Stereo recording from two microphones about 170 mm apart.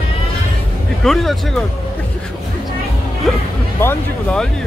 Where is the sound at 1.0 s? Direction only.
Centre (ahead or behind).